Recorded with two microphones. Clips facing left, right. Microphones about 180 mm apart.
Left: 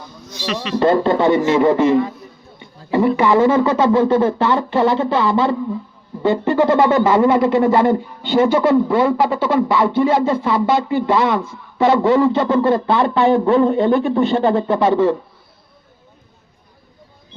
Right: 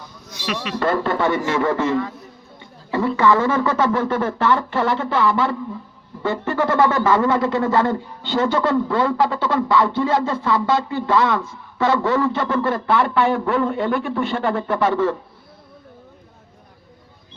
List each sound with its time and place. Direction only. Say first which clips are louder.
0.4 s speech: left 4 dB; 5° right (ahead or behind)
0.8 s speech: left 6 dB; 20° left (ahead or behind)
2.6 s a sound: left 6 dB; 15° left (ahead or behind)
3.2 s speech: left 2 dB; 15° left (ahead or behind)